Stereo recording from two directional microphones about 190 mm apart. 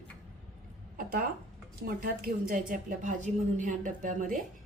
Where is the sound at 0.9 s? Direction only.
50° right (ahead or behind).